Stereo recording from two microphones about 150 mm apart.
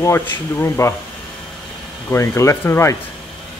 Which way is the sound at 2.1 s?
20° left (ahead or behind).